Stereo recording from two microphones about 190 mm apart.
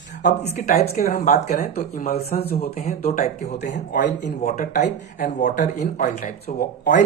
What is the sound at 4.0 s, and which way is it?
Speech, 45° left (ahead or behind).